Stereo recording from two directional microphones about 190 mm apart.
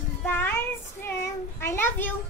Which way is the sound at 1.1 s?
10° left (ahead or behind).